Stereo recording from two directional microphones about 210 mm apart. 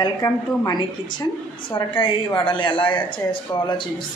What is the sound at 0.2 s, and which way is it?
Speech, 10° left (ahead or behind).